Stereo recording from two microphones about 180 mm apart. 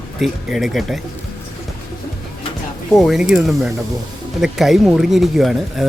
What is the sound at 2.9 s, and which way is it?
Speech, centre (ahead or behind).